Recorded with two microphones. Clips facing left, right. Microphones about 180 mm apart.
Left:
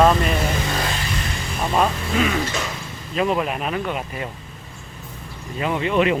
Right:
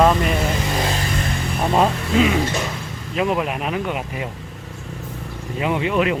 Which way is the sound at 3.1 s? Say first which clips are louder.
Even; 10° right (ahead or behind).